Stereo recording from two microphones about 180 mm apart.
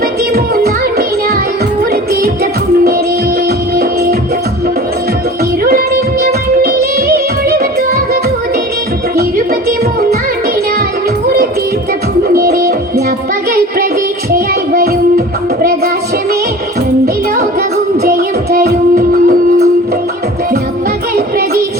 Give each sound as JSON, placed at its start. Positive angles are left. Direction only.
{"t": 0.3, "sound": "music", "side_deg": -60}
{"t": 6.2, "sound": "music", "side_deg": -60}
{"t": 9.6, "sound": "music", "side_deg": -60}
{"t": 12.3, "sound": "music", "side_deg": -50}
{"t": 14.3, "sound": "child singing", "side_deg": -55}
{"t": 18.5, "sound": "music", "side_deg": -60}